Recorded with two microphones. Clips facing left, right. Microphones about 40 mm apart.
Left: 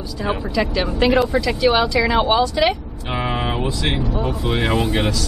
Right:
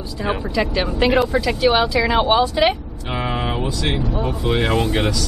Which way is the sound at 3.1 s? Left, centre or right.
Centre.